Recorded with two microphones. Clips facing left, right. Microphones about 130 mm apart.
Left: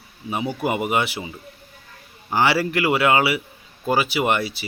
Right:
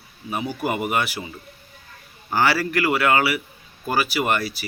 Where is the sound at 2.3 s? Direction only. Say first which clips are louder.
Left 1 dB; 20° left (ahead or behind).